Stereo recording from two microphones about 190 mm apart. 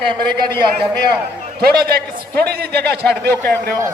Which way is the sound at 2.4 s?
55° right (ahead or behind).